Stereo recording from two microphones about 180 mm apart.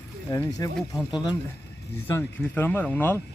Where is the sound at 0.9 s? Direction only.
25° left (ahead or behind).